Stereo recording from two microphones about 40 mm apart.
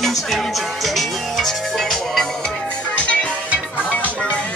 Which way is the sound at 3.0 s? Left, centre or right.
Left.